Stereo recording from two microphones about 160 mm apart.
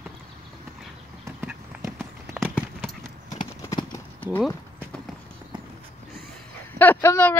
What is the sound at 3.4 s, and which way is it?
Clip-clop, 25° left (ahead or behind).